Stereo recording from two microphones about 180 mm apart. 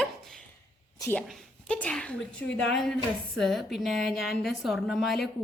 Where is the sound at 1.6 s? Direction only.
5° left (ahead or behind).